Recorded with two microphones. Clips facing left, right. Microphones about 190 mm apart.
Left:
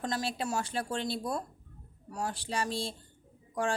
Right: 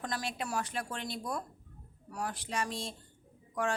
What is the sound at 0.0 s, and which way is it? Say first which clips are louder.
A woman's voice: left 4 dB; 25° left (ahead or behind).